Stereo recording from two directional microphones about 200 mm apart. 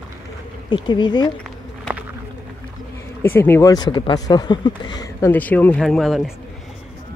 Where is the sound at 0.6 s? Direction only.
25° left (ahead or behind).